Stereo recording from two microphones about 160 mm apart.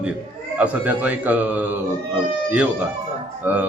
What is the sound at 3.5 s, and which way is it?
Speech, 10° right (ahead or behind).